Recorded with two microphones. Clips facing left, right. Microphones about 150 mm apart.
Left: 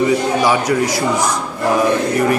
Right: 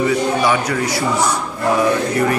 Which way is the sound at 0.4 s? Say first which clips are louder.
Left 2 dB; 10° left (ahead or behind).